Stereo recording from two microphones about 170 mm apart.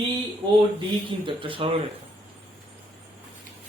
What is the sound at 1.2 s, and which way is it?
Speech, 30° right (ahead or behind).